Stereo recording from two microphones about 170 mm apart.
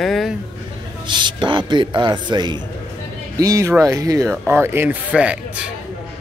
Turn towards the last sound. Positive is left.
turn(degrees=-5)  # may be behind; listen again after turning